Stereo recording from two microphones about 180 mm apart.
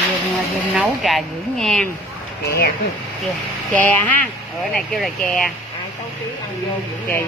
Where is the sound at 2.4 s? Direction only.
65° left (ahead or behind).